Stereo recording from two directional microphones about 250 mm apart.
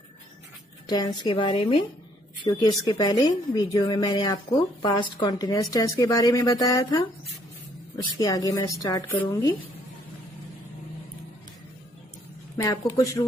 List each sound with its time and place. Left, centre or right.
0.8 s a woman's voice: centre
8.2 s a woman's voice: centre
12.5 s a woman's voice: centre